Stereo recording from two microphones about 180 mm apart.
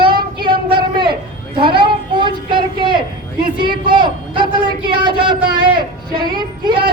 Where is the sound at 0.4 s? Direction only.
25° right (ahead or behind).